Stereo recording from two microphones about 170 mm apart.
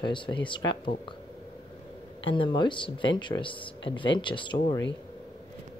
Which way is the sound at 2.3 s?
30° left (ahead or behind).